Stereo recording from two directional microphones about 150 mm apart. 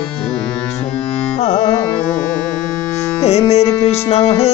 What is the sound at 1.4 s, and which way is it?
Carnatic music, 45° left (ahead or behind).